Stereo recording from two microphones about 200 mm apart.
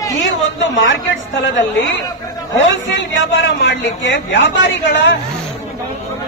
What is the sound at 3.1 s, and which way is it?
A woman's voice, 65° left (ahead or behind).